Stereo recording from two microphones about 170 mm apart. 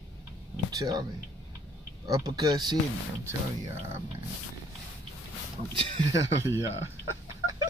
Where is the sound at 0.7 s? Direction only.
20° right (ahead or behind).